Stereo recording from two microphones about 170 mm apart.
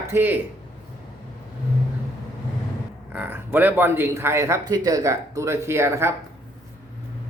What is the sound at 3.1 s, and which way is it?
Speech, 10° right (ahead or behind).